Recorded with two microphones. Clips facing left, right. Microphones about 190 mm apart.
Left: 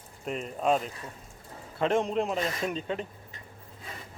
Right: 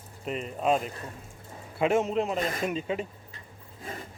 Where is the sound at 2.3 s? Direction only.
50° right (ahead or behind).